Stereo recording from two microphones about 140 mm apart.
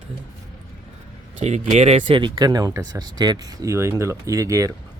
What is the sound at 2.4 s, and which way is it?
Speech, 25° right (ahead or behind).